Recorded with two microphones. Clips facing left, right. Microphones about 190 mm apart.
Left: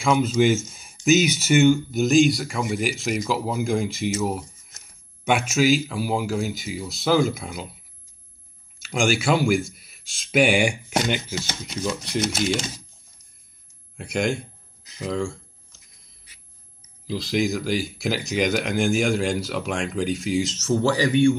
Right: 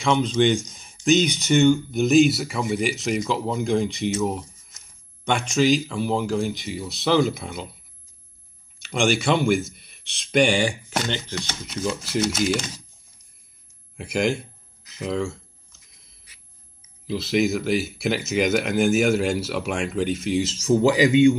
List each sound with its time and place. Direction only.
0.0 s speech: 5° left (ahead or behind)
8.8 s speech: centre (ahead or behind)
11.6 s speech: centre (ahead or behind)
13.9 s speech: 5° right (ahead or behind)
17.1 s speech: 5° right (ahead or behind)
20.5 s a man's voice: 15° right (ahead or behind)